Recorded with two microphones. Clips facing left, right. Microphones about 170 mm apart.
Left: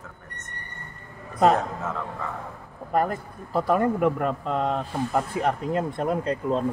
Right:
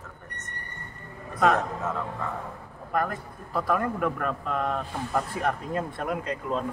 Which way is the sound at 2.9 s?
25° left (ahead or behind).